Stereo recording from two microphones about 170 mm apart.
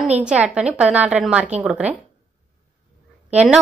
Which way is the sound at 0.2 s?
5° right (ahead or behind).